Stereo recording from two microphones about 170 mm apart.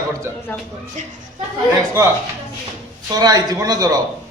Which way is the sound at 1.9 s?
15° right (ahead or behind).